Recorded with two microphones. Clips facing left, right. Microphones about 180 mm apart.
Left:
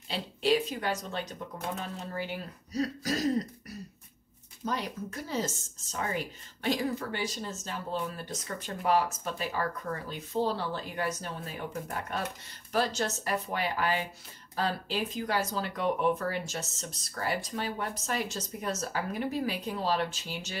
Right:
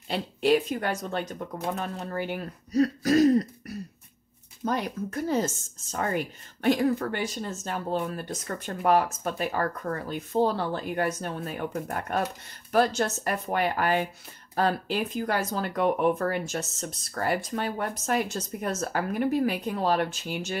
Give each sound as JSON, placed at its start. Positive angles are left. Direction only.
{"t": 0.1, "sound": "speech", "side_deg": -55}
{"t": 4.6, "sound": "speech", "side_deg": -50}